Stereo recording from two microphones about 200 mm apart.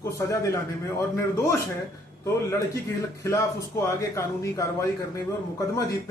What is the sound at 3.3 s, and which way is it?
Speech, 15° left (ahead or behind).